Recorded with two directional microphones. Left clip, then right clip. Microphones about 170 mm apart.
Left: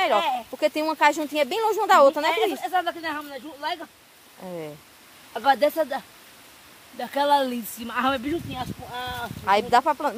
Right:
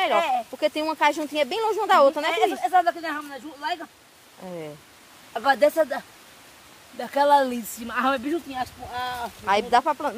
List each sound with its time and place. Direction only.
0.2 s speech: centre (ahead or behind)
0.5 s speech: 25° left (ahead or behind)
2.6 s speech: centre (ahead or behind)
4.4 s speech: 25° left (ahead or behind)
5.3 s speech: 5° right (ahead or behind); by 8.4 s 15° left (ahead or behind)
8.5 s speech: 5° left (ahead or behind)
9.4 s speech: 20° left (ahead or behind)